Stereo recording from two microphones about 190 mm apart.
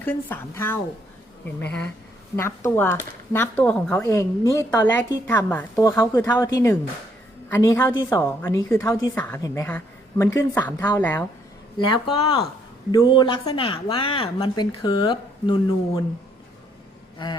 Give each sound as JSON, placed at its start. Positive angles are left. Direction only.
{"t": 0.0, "sound": "a woman's voice", "side_deg": 10}
{"t": 12.0, "sound": "a woman's voice", "side_deg": 25}
{"t": 17.2, "sound": "a woman's voice", "side_deg": 25}